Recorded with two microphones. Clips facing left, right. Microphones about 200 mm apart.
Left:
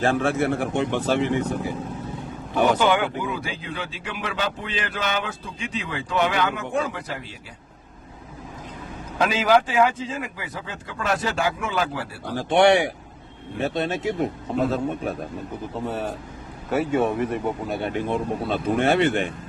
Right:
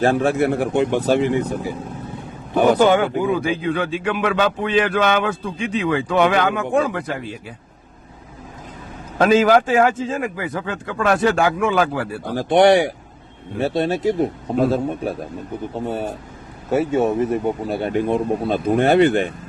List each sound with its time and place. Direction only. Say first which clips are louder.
0.0 s speech: right 4 dB; 40° right (ahead or behind)
2.6 s speech: right 5 dB; 40° right (ahead or behind)
9.1 s a man's voice: right 6 dB; 45° right (ahead or behind)
16.9 s speech: right 3 dB; 25° right (ahead or behind)
17.4 s speech: right 4 dB; 35° right (ahead or behind)